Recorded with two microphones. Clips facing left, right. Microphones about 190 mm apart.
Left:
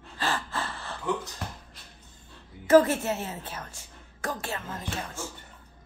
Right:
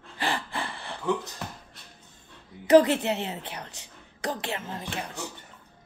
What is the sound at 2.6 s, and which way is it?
A woman's voice, 20° right (ahead or behind).